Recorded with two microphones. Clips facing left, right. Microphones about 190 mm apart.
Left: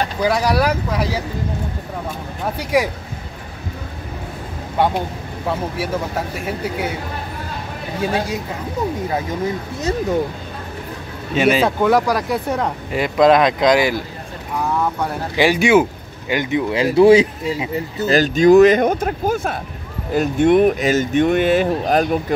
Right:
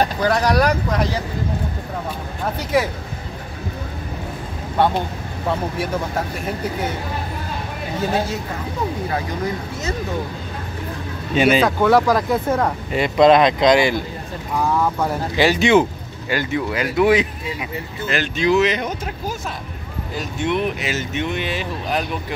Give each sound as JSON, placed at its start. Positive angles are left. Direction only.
{"t": 0.2, "sound": "speech", "side_deg": 10}
{"t": 2.7, "sound": "speech", "side_deg": 10}
{"t": 4.7, "sound": "speech", "side_deg": 10}
{"t": 8.0, "sound": "speech", "side_deg": 15}
{"t": 11.3, "sound": "speech", "side_deg": 5}
{"t": 11.8, "sound": "speech", "side_deg": 15}
{"t": 15.3, "sound": "speech", "side_deg": 10}
{"t": 16.8, "sound": "speech", "side_deg": 30}